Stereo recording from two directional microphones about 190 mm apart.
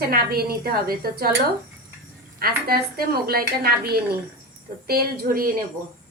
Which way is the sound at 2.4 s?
55° right (ahead or behind).